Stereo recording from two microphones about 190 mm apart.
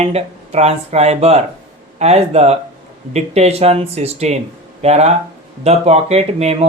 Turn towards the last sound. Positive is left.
turn(degrees=-35)  # may be behind; listen again after turning